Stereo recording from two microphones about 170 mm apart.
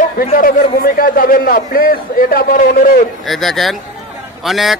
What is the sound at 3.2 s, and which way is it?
A man's voice, centre (ahead or behind).